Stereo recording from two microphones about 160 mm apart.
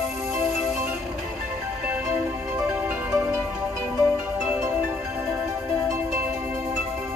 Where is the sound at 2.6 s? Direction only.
15° right (ahead or behind).